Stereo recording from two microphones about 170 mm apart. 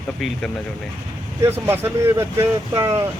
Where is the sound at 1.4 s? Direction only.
15° right (ahead or behind).